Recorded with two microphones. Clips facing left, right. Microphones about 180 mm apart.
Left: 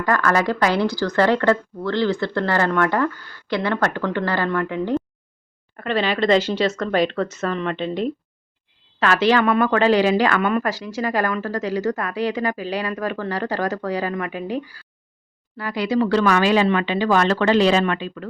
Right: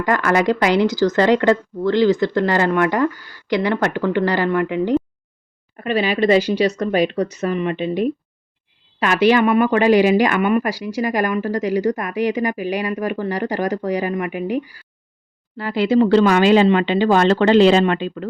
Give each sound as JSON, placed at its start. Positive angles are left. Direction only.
{"t": 0.0, "sound": "speech", "side_deg": -20}
{"t": 15.5, "sound": "speech", "side_deg": -25}